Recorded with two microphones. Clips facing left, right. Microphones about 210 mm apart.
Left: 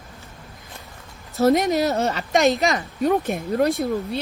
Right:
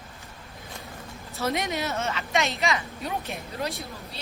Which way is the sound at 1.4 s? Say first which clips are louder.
Left 11 dB; 40° left (ahead or behind).